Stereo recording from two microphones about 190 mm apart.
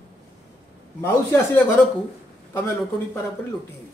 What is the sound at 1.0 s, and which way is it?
Speech, 10° left (ahead or behind).